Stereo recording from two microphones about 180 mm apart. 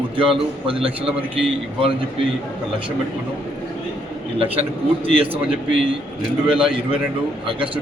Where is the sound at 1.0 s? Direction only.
10° right (ahead or behind).